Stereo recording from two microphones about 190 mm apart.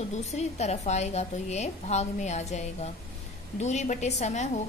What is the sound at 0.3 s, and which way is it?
A woman's voice, 35° left (ahead or behind).